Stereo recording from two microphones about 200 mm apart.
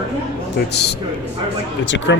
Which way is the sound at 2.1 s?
65° left (ahead or behind).